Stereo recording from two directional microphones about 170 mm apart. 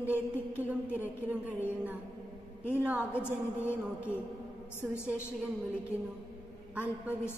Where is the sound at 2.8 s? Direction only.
10° right (ahead or behind).